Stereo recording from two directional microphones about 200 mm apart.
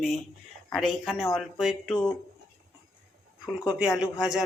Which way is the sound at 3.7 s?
5° right (ahead or behind).